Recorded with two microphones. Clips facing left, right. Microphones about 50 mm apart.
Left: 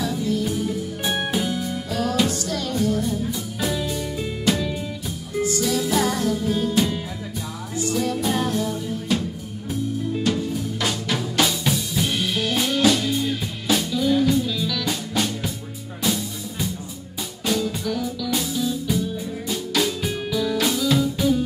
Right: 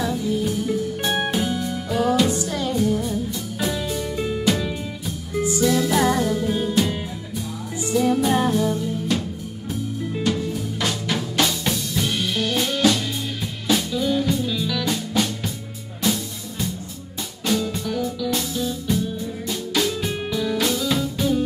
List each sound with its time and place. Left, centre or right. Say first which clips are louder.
1.0 s music: even; centre
1.9 s music: right 4 dB; centre
3.1 s music: even; centre
7.9 s music: right 5 dB; centre
10.2 s music: right 2 dB; centre
15.1 s music: right 1 dB; centre